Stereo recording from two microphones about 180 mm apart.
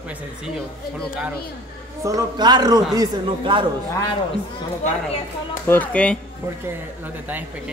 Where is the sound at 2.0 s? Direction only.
20° right (ahead or behind).